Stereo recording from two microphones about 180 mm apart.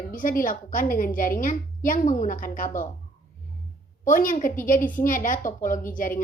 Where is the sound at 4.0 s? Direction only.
50° left (ahead or behind).